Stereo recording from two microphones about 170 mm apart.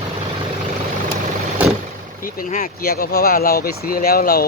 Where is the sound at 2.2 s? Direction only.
55° left (ahead or behind).